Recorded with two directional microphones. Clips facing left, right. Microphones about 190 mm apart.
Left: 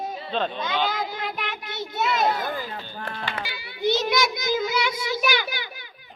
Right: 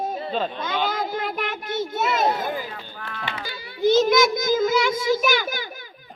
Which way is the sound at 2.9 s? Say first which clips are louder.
Left 2 dB; 40° left (ahead or behind).